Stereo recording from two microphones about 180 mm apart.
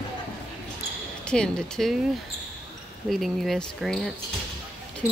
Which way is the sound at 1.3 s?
5° left (ahead or behind).